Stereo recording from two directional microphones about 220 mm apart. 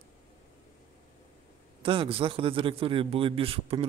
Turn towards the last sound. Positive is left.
turn(degrees=-25)  # may be behind; listen again after turning